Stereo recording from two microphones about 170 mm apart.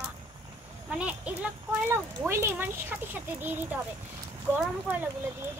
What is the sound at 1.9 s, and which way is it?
A child's voice, 15° right (ahead or behind).